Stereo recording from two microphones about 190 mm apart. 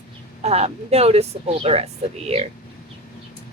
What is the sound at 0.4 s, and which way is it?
A woman's voice, 35° right (ahead or behind).